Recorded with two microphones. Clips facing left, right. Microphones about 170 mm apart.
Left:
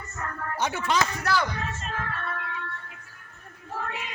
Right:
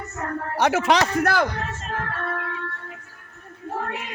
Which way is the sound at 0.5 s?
80° right.